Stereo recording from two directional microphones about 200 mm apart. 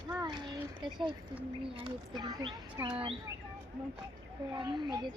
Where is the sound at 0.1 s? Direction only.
15° right (ahead or behind).